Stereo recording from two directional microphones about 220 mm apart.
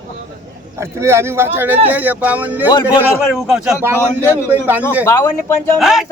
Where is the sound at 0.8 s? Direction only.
10° right (ahead or behind).